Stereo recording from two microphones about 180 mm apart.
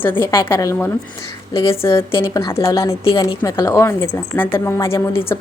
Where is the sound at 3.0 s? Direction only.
30° left (ahead or behind).